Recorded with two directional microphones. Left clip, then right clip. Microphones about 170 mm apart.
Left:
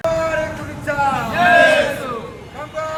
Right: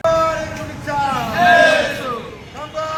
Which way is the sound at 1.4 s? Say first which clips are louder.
Right 1 dB; 5° left (ahead or behind).